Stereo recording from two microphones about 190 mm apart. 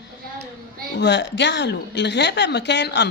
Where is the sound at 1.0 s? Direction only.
65° left (ahead or behind).